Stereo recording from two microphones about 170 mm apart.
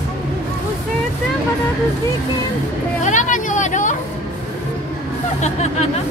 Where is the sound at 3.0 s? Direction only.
45° left (ahead or behind).